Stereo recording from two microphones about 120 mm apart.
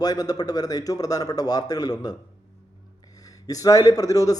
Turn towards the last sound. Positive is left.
turn(degrees=30)  # may be behind; listen again after turning